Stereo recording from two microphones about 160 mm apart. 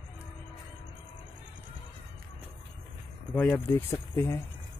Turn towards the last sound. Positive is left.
turn(degrees=15)  # may be behind; listen again after turning